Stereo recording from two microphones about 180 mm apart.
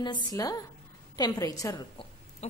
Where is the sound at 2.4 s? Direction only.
35° left (ahead or behind).